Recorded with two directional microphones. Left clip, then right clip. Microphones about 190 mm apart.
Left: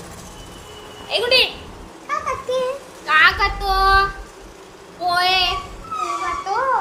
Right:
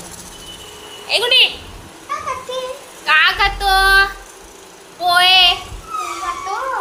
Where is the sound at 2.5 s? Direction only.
65° left (ahead or behind).